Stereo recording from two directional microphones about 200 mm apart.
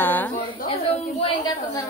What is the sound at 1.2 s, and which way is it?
Speech, 20° left (ahead or behind).